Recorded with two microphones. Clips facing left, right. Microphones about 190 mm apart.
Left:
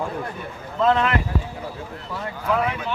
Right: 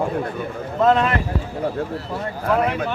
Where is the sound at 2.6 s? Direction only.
50° right (ahead or behind).